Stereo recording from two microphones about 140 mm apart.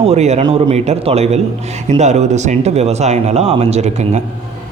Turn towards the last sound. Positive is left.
turn(degrees=-55)  # may be behind; listen again after turning